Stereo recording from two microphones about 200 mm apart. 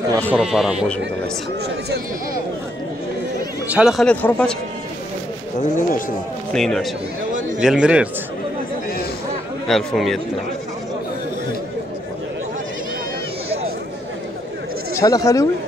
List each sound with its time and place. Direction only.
0.3 s a man's voice: 5° right (ahead or behind)
3.7 s a man's voice: centre (ahead or behind)
5.6 s speech: 40° left (ahead or behind)
6.5 s a man's voice: centre (ahead or behind)
9.7 s a man's voice: centre (ahead or behind)
15.0 s speech: 15° left (ahead or behind)